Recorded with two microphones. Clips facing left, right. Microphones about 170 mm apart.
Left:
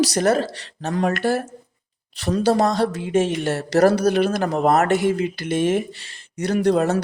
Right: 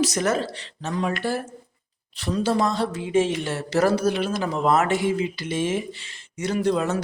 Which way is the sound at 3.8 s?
65° left (ahead or behind).